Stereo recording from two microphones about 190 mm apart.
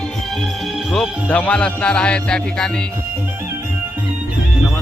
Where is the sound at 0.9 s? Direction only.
5° left (ahead or behind).